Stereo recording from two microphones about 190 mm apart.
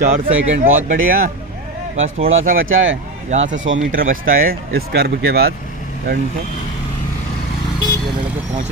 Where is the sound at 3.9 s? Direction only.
50° right (ahead or behind).